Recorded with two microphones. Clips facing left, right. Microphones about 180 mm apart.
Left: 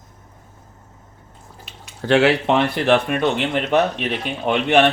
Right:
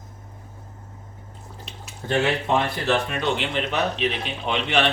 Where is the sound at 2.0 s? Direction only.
90° left; by 4.8 s 50° left (ahead or behind).